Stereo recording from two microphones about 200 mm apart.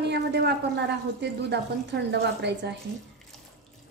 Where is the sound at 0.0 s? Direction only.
55° right (ahead or behind).